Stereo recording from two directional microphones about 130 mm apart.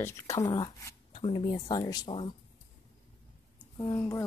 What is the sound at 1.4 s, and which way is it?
Speech, 35° left (ahead or behind).